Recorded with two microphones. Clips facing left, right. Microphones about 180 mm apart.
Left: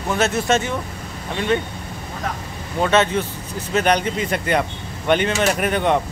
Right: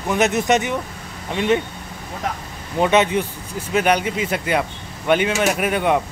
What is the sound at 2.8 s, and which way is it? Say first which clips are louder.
Speech: right 1 dB; 15° right (ahead or behind).